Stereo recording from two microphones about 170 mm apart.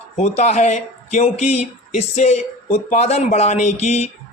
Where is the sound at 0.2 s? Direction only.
40° left (ahead or behind).